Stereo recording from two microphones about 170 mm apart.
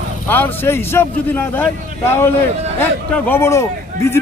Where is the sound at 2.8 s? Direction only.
10° left (ahead or behind).